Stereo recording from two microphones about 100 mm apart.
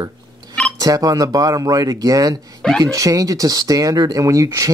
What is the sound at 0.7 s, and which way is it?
Speech, 35° right (ahead or behind).